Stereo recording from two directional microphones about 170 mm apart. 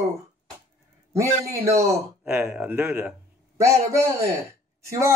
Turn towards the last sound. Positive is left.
turn(degrees=-20)  # may be behind; listen again after turning